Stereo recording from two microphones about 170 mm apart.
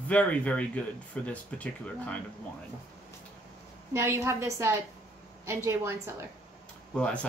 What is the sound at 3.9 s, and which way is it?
A woman's voice, 15° right (ahead or behind).